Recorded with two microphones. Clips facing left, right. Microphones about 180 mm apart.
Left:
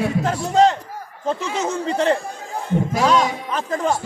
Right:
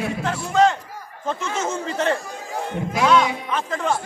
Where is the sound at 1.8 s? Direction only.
30° left (ahead or behind).